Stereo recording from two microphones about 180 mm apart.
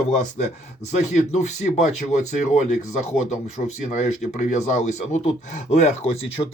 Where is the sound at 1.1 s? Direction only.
40° left (ahead or behind).